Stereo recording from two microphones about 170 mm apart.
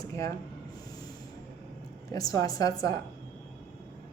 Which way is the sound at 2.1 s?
20° left (ahead or behind).